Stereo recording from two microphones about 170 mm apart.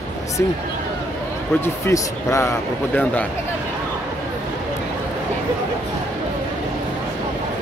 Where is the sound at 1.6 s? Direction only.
15° left (ahead or behind).